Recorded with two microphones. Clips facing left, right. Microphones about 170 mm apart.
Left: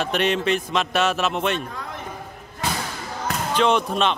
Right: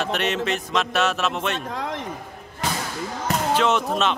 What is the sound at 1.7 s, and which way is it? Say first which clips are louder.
Speech: right 6 dB; 90° right.